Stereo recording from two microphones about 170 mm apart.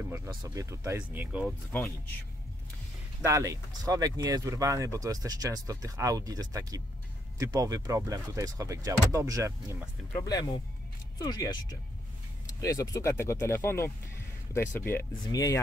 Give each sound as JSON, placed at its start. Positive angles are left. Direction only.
{"t": 0.4, "sound": "speech", "side_deg": -20}
{"t": 1.7, "sound": "speech", "side_deg": 10}
{"t": 3.2, "sound": "speech", "side_deg": -20}
{"t": 10.2, "sound": "speech", "side_deg": 20}